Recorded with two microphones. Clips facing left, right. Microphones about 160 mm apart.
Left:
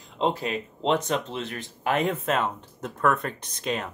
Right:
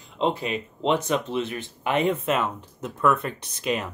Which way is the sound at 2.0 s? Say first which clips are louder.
Right 3 dB; centre (ahead or behind).